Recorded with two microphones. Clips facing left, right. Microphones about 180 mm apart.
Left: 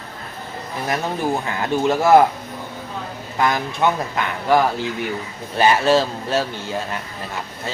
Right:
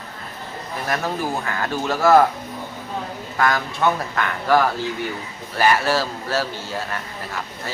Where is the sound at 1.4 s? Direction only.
20° left (ahead or behind).